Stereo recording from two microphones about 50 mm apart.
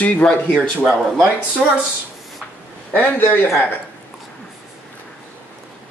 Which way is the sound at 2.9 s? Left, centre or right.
Left.